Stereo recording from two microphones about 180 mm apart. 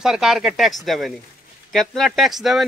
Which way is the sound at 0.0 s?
5° right (ahead or behind).